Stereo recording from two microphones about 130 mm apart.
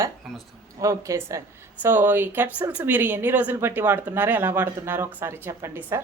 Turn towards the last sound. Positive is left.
turn(degrees=-20)  # may be behind; listen again after turning